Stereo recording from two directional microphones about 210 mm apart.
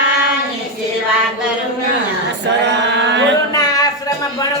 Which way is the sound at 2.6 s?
55° right (ahead or behind).